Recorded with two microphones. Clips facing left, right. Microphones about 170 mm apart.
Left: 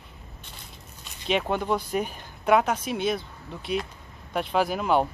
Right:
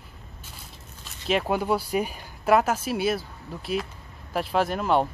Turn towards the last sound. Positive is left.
turn(degrees=0)  # may be behind; listen again after turning